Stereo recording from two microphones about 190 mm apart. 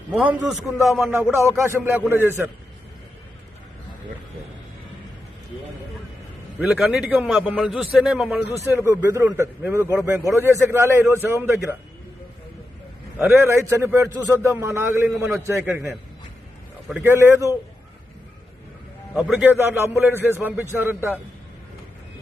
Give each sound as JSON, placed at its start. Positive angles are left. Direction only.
{"t": 0.4, "sound": "a man's voice", "side_deg": 0}
{"t": 1.1, "sound": "a man's voice", "side_deg": -10}
{"t": 6.6, "sound": "a man's voice", "side_deg": 0}
{"t": 13.1, "sound": "a man's voice", "side_deg": -10}
{"t": 19.1, "sound": "a man's voice", "side_deg": -5}